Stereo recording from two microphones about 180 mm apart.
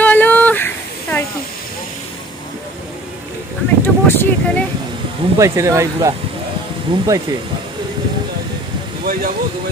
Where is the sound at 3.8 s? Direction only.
10° left (ahead or behind).